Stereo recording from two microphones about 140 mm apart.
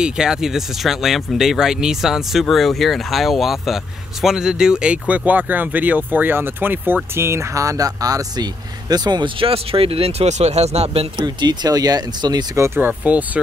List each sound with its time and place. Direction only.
0.0 s speech: 5° right (ahead or behind); by 11.1 s 45° right (ahead or behind)
11.2 s speech: 30° right (ahead or behind); by 13.4 s 10° right (ahead or behind)